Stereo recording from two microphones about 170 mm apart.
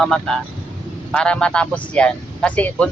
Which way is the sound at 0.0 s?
Centre (ahead or behind).